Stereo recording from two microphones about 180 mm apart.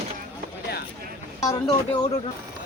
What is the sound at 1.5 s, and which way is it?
Speech, 20° left (ahead or behind).